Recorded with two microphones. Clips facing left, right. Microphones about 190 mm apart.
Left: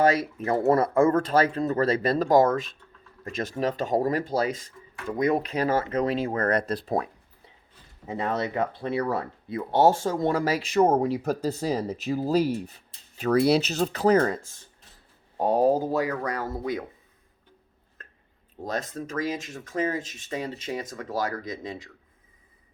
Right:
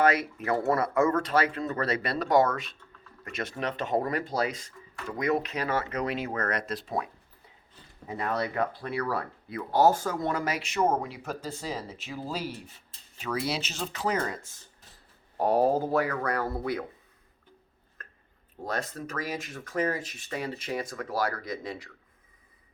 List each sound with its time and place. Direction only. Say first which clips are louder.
0.3 s speech: left 5 dB; 35° left (ahead or behind)
3.2 s speech: left 5 dB; 40° left (ahead or behind)
8.0 s speech: left 3 dB; 25° left (ahead or behind)
15.4 s speech: left 2 dB; 20° left (ahead or behind)
18.6 s speech: left 2 dB; 25° left (ahead or behind)